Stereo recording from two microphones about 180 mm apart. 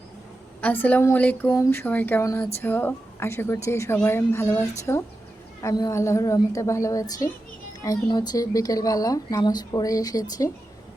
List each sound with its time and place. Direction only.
0.6 s a woman's voice: 10° left (ahead or behind)